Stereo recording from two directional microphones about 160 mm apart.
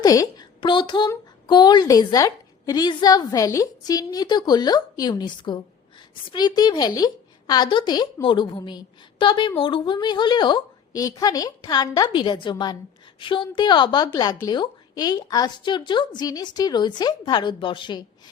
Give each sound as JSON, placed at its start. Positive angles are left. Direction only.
{"t": 0.0, "sound": "a woman's voice", "side_deg": 25}